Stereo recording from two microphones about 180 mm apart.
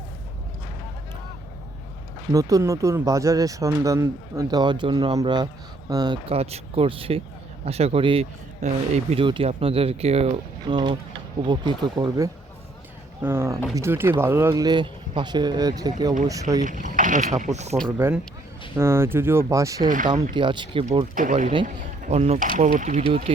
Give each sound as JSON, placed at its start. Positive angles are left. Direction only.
{"t": 2.3, "sound": "speech", "side_deg": -20}
{"t": 16.6, "sound": "speech", "side_deg": -45}
{"t": 17.9, "sound": "speech", "side_deg": -15}
{"t": 21.2, "sound": "speech", "side_deg": -45}